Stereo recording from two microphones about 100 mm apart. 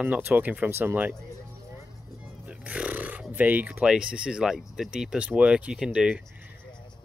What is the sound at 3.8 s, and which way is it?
Speech, 10° right (ahead or behind).